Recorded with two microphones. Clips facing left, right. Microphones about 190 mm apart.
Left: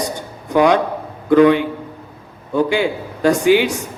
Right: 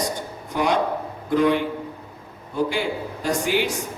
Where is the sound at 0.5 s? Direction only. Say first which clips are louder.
Left 8 dB; 90° left.